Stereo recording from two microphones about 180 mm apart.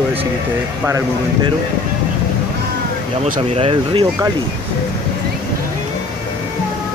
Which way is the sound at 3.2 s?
35° right (ahead or behind).